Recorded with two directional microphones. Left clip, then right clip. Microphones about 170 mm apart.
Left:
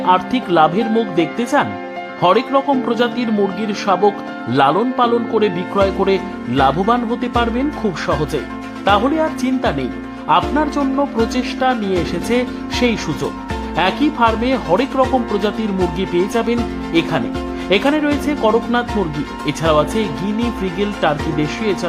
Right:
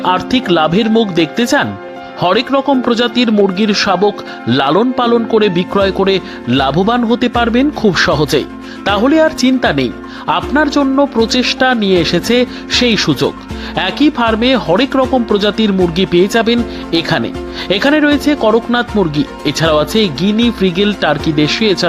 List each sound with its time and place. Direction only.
0.0 s speech: 25° right (ahead or behind)